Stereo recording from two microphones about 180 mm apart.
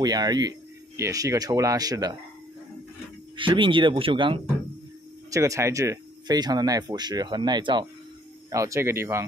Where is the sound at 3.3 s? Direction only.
25° right (ahead or behind).